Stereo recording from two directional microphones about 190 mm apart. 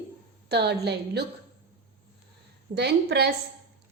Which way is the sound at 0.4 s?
60° right (ahead or behind).